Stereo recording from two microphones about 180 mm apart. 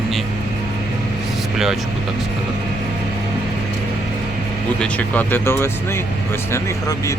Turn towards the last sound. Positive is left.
turn(degrees=15)  # may be behind; listen again after turning